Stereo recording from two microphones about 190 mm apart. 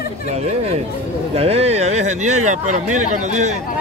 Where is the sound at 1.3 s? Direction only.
30° right (ahead or behind).